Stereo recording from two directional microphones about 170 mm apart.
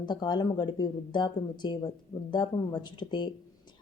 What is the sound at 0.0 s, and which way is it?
Speech, 25° left (ahead or behind).